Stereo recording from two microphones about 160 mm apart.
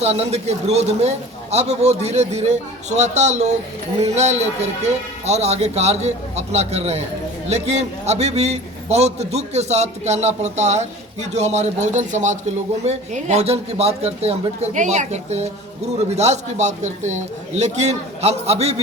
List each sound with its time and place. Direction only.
0.0 s a man's voice: 40° right (ahead or behind)